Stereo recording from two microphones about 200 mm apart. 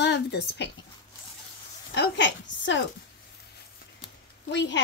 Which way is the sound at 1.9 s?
65° left (ahead or behind).